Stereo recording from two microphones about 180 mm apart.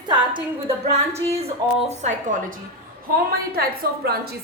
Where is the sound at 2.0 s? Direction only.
40° right (ahead or behind).